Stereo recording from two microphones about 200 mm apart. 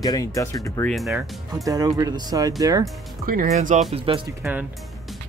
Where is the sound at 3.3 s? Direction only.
40° right (ahead or behind).